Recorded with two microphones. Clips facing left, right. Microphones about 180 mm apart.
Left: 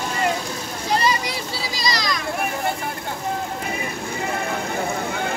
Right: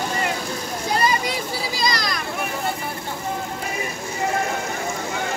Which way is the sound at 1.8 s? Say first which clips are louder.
Left 1 dB; 55° right (ahead or behind).